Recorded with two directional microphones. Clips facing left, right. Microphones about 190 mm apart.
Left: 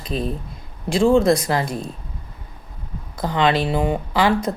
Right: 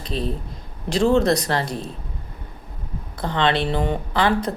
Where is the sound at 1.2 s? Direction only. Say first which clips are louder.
Left 2 dB; 40° right (ahead or behind).